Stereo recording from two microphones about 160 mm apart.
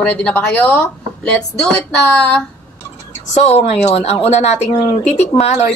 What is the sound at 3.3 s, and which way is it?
A woman's voice, 40° left (ahead or behind).